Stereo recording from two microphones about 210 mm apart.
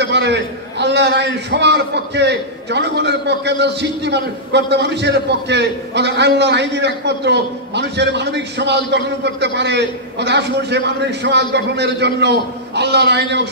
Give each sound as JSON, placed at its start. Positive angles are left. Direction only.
{"t": 0.0, "sound": "a man's voice", "side_deg": -55}